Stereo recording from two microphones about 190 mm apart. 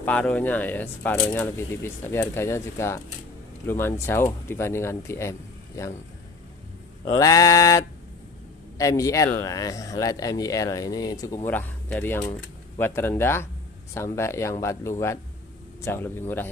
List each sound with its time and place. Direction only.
0.0 s speech: 5° left (ahead or behind)
7.2 s speech: 15° left (ahead or behind)